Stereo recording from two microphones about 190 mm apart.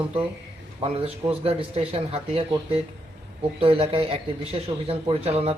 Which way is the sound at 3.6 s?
30° right (ahead or behind).